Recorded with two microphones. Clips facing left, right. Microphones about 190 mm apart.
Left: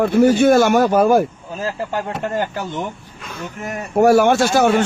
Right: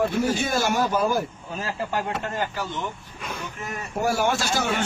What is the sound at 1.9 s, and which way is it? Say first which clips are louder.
Speech: left 3 dB; 35° left (ahead or behind).